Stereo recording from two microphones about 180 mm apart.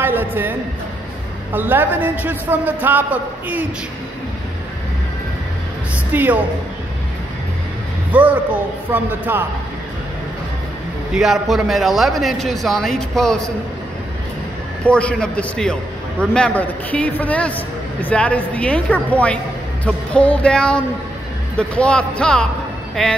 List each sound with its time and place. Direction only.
0.0 s a woman's voice: 10° right (ahead or behind)
6.1 s a man's voice: 10° right (ahead or behind)
8.1 s a man's voice: 10° right (ahead or behind)
11.1 s a man's voice: centre (ahead or behind)
14.9 s a man's voice: 5° left (ahead or behind)